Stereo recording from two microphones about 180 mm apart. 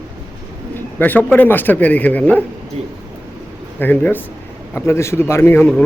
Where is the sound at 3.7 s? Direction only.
10° left (ahead or behind).